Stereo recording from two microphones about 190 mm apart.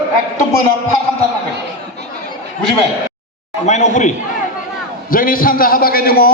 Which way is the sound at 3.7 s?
40° left (ahead or behind).